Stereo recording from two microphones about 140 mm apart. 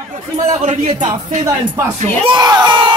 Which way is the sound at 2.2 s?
30° right (ahead or behind).